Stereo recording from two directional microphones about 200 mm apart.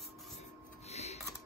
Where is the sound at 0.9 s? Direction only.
35° left (ahead or behind).